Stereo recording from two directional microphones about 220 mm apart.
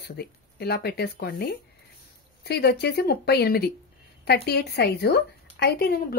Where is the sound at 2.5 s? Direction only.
45° left (ahead or behind).